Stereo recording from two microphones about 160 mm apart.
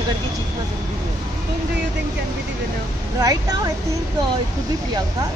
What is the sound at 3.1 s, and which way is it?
Speech, 20° right (ahead or behind).